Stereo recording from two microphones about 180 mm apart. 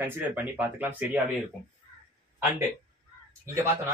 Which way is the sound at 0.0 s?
10° right (ahead or behind).